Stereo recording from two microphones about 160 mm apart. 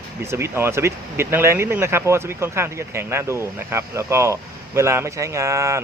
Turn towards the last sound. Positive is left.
turn(degrees=-20)  # may be behind; listen again after turning